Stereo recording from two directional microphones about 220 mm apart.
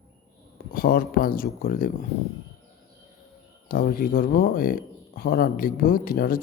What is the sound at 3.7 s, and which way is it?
Speech, 40° left (ahead or behind).